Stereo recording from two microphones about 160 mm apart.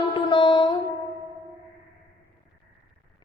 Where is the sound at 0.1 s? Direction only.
30° left (ahead or behind).